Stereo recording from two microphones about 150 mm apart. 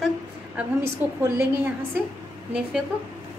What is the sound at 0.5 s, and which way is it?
Speech, 15° right (ahead or behind).